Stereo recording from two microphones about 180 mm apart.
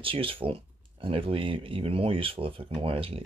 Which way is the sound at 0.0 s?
30° right (ahead or behind).